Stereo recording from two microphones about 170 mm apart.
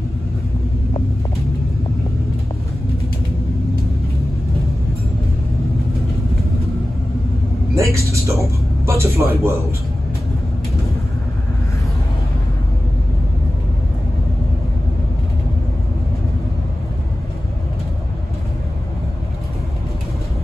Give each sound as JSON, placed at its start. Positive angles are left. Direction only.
{"t": 7.7, "sound": "vehicle", "side_deg": -15}
{"t": 8.8, "sound": "speech", "side_deg": -15}